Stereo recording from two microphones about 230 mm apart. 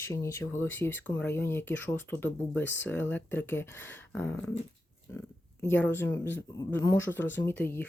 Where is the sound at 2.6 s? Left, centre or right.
Left.